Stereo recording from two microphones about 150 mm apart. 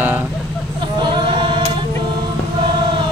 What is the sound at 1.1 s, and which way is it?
A capella, 35° right (ahead or behind).